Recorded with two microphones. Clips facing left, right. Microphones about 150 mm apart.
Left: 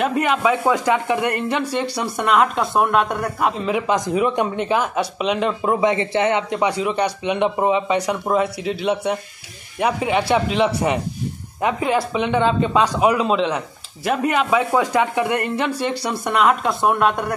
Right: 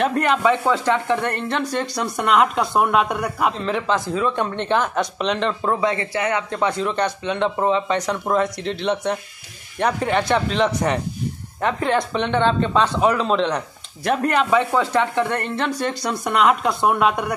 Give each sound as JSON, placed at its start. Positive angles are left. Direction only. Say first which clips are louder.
{"t": 0.0, "sound": "speech", "louder": "even", "side_deg": 5}